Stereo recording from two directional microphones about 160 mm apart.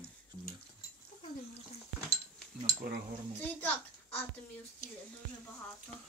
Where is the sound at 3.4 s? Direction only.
10° left (ahead or behind).